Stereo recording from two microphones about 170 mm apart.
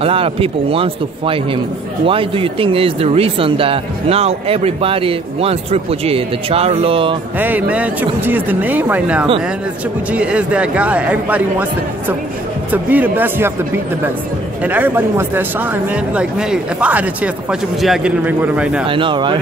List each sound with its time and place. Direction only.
0.0 s speech: 35° right (ahead or behind)
7.3 s speech: 10° right (ahead or behind)
12.7 s speech: 10° right (ahead or behind)
14.6 s speech: 10° right (ahead or behind)
18.9 s speech: 30° right (ahead or behind)